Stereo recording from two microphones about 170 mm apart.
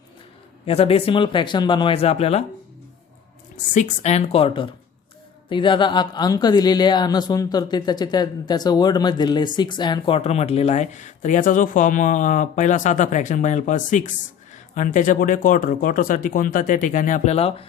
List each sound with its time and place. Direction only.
0.6 s speech: 35° left (ahead or behind)
3.8 s speech: 40° left (ahead or behind)